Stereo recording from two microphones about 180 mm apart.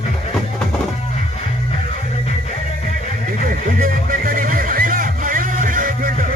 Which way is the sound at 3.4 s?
50° right (ahead or behind).